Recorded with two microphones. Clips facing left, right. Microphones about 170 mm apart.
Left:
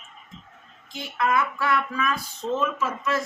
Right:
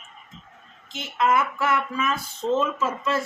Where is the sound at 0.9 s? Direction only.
20° right (ahead or behind).